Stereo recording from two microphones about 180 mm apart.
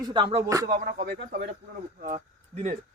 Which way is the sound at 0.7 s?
60° right (ahead or behind).